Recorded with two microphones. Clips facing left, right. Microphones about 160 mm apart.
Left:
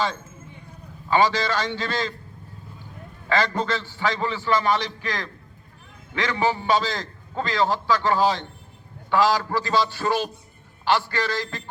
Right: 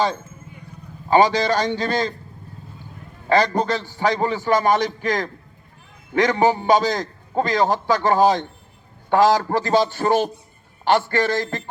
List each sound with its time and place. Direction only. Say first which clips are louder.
1.0 s a man's voice: right 5 dB; 40° right (ahead or behind)
3.2 s a man's voice: right 5 dB; 40° right (ahead or behind)